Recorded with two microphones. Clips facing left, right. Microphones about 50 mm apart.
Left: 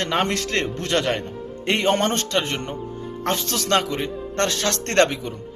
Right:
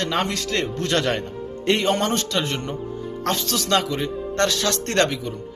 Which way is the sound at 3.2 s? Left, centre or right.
Left.